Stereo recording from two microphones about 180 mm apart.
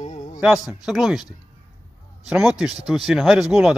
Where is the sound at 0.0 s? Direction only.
45° left (ahead or behind).